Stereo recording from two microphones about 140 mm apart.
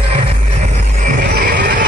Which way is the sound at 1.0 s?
90° right.